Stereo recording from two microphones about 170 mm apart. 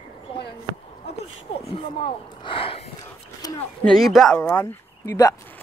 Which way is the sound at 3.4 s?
20° left (ahead or behind).